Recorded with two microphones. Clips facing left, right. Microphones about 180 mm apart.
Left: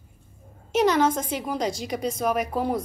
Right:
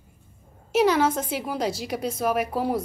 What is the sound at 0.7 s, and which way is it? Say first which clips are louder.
A woman's voice: even; 5° right (ahead or behind).